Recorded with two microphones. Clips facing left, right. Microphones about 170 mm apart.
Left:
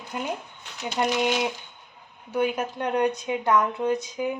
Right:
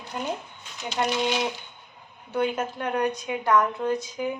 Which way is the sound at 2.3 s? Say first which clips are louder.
Left 1 dB; 10° left (ahead or behind).